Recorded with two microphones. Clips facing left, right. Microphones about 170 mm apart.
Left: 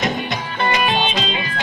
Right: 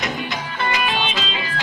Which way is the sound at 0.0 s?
20° left (ahead or behind).